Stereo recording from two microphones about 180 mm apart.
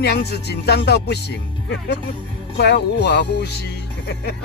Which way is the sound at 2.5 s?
70° left (ahead or behind).